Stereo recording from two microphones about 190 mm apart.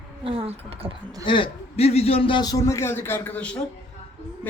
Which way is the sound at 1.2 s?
25° left (ahead or behind).